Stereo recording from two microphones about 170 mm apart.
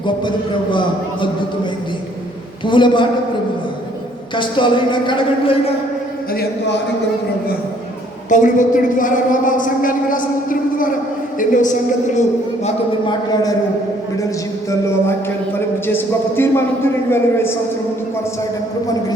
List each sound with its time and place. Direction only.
0.0 s speech: 30° left (ahead or behind)
2.6 s speech: 30° left (ahead or behind)
4.4 s speech: 30° left (ahead or behind)
8.3 s a woman's voice: 50° left (ahead or behind)
15.9 s a man's voice: 15° left (ahead or behind)